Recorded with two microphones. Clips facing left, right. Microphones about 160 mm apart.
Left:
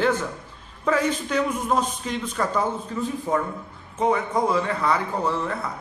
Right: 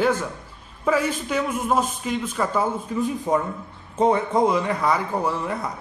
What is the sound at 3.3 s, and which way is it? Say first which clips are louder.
A man's voice: right 2 dB; 25° right (ahead or behind).